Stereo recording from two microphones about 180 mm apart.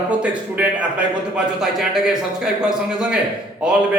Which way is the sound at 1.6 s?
5° right (ahead or behind).